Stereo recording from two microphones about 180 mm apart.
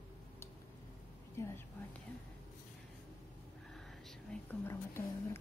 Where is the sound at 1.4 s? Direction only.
15° left (ahead or behind).